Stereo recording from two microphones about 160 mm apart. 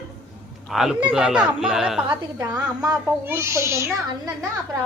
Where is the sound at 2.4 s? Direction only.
20° right (ahead or behind).